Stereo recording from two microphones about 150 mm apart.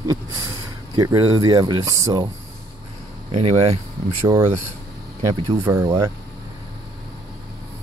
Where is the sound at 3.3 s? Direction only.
40° right (ahead or behind).